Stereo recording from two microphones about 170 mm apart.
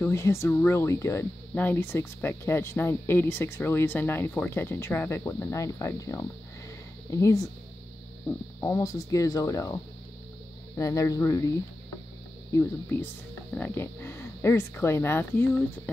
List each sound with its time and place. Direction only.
0.0 s speech: 15° left (ahead or behind)
8.5 s speech: 20° left (ahead or behind)
10.8 s speech: 20° left (ahead or behind)